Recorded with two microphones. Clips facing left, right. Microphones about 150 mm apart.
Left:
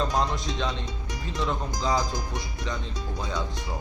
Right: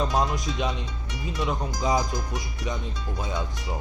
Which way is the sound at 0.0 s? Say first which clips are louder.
Right 1 dB; 15° right (ahead or behind).